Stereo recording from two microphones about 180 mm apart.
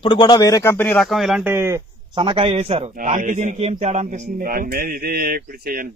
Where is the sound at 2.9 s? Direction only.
50° right (ahead or behind).